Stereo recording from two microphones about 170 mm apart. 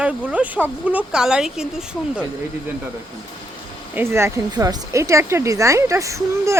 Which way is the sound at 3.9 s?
15° right (ahead or behind).